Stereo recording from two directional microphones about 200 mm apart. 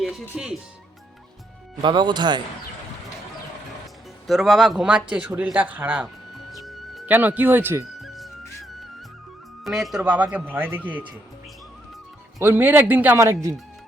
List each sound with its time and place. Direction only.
0.0 s speech: centre (ahead or behind)
1.8 s speech: 20° right (ahead or behind)
4.3 s a man's voice: centre (ahead or behind)
6.5 s music: centre (ahead or behind)
8.0 s music: centre (ahead or behind)
9.6 s speech: centre (ahead or behind)
12.4 s speech: 10° right (ahead or behind)